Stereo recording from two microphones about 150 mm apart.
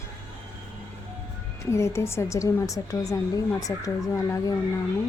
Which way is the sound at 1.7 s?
20° left (ahead or behind).